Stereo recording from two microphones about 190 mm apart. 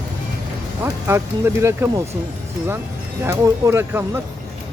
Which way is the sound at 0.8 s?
15° right (ahead or behind).